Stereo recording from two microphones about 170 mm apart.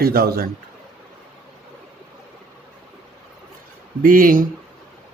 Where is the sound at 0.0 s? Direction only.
65° right (ahead or behind).